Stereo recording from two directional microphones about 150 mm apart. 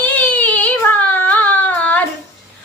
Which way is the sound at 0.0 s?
10° left (ahead or behind).